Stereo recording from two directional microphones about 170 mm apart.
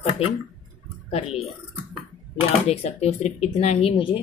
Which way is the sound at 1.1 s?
35° left (ahead or behind).